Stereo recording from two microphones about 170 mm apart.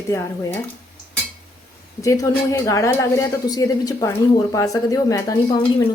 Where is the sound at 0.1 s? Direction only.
15° left (ahead or behind).